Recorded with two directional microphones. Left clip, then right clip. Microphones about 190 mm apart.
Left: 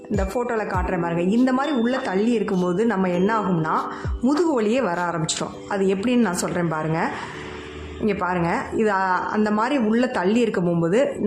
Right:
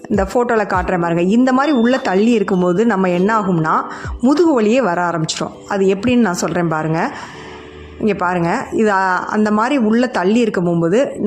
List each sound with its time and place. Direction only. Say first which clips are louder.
0.2 s a woman's voice: right 9 dB; 40° right (ahead or behind)